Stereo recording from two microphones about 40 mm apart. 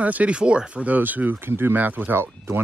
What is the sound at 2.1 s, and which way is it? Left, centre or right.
Speech, right.